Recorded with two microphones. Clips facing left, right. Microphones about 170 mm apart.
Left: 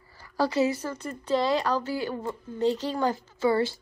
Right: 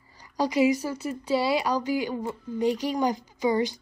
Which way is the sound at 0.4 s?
15° right (ahead or behind).